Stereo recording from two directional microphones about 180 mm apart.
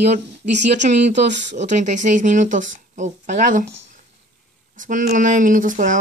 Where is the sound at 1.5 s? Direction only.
40° right (ahead or behind).